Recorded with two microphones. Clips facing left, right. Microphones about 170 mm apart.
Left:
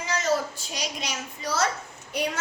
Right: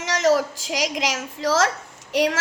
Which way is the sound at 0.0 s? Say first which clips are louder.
Right 6 dB; 90° right.